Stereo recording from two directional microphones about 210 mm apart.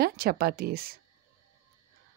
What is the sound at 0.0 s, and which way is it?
Speech, 45° right (ahead or behind).